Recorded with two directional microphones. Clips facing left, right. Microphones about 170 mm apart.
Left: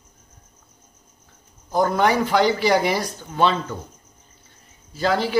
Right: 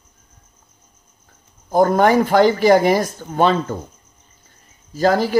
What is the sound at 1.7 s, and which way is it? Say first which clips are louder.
Speech: right 5 dB; 50° right (ahead or behind).